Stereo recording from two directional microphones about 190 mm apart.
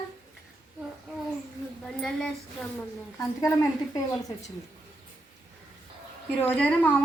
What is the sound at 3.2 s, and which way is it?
Speech, 15° left (ahead or behind).